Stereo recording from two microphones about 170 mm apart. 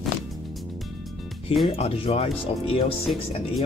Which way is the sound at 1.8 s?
35° left (ahead or behind).